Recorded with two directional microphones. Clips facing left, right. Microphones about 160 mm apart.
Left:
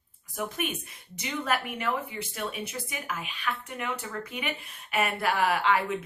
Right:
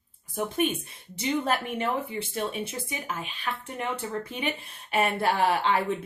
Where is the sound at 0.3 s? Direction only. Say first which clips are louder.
Right 6 dB; 30° right (ahead or behind).